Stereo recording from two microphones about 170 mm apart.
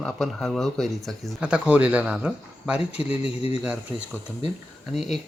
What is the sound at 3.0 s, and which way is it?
Speech, 35° left (ahead or behind).